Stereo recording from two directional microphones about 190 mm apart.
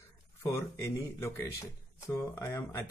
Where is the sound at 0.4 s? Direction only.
15° left (ahead or behind).